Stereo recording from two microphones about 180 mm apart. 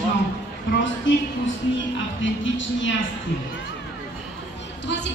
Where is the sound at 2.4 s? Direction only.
90° left.